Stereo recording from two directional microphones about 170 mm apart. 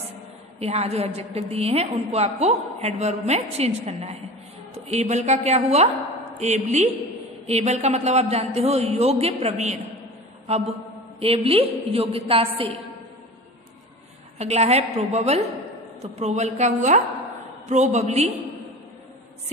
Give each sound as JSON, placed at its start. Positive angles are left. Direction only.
{"t": 0.6, "sound": "a woman's voice", "side_deg": -35}
{"t": 11.1, "sound": "a woman's voice", "side_deg": -35}
{"t": 14.4, "sound": "a woman's voice", "side_deg": -40}